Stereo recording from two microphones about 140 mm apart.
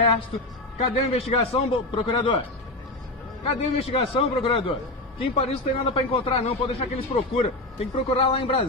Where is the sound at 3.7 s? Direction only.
40° left (ahead or behind).